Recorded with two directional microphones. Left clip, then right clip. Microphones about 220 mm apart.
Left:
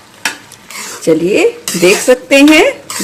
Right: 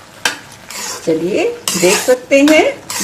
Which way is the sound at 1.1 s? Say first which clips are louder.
Left 5 dB; 35° left (ahead or behind).